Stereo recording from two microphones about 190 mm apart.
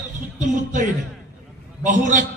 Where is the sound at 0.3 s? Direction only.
40° right (ahead or behind).